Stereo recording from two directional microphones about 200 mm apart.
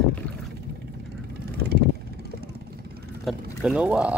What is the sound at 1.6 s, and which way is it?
Vehicle, 55° right (ahead or behind).